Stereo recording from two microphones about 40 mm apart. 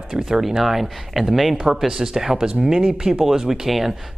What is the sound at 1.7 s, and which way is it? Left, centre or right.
Speech, centre.